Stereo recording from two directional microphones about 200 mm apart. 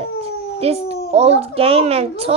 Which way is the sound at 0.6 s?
30° right (ahead or behind).